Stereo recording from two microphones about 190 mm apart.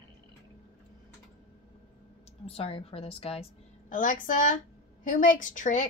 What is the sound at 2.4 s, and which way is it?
A woman's voice, 30° left (ahead or behind).